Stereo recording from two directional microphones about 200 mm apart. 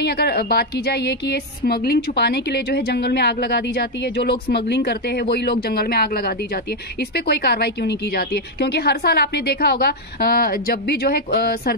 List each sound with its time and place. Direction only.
0.0 s a woman's voice: 55° left (ahead or behind)